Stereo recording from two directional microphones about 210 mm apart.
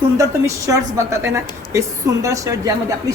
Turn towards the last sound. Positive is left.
turn(degrees=-15)  # may be behind; listen again after turning